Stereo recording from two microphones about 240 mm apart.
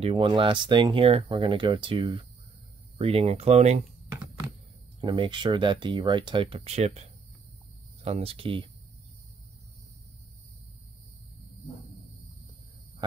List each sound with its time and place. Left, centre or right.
0.0 s speech: right
5.0 s speech: right